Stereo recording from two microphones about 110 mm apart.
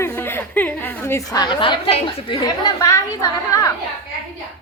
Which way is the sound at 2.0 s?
45° left (ahead or behind).